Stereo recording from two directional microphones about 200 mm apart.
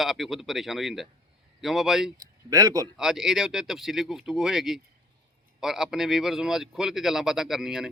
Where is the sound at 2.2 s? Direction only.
15° right (ahead or behind).